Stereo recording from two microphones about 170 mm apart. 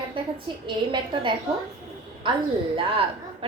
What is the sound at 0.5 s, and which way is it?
Speech, 30° right (ahead or behind).